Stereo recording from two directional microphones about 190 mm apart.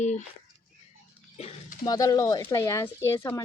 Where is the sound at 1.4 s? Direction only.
25° left (ahead or behind).